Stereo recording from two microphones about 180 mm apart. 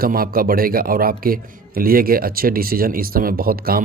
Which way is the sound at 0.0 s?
55° right (ahead or behind).